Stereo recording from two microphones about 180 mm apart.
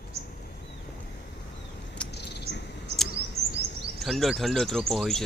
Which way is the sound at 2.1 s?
70° left (ahead or behind).